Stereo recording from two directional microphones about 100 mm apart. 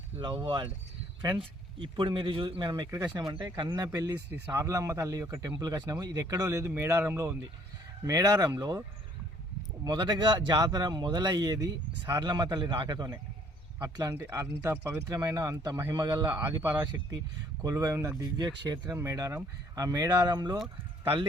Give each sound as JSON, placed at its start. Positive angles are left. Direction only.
{"t": 0.2, "sound": "speech", "side_deg": -55}
{"t": 4.3, "sound": "speech", "side_deg": -30}
{"t": 8.0, "sound": "speech", "side_deg": -40}
{"t": 9.8, "sound": "speech", "side_deg": -50}
{"t": 12.2, "sound": "speech", "side_deg": -45}
{"t": 16.3, "sound": "speech", "side_deg": -20}
{"t": 17.6, "sound": "speech", "side_deg": -35}
{"t": 18.2, "sound": "speech", "side_deg": -40}